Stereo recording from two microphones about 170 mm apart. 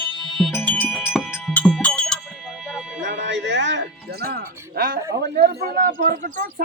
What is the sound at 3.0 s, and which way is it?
Music, 90° right.